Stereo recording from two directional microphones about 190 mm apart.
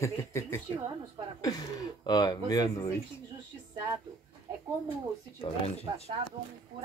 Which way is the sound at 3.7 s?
20° right (ahead or behind).